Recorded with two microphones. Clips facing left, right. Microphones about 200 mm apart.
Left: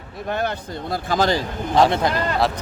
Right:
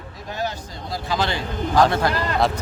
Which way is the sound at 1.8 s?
20° left (ahead or behind).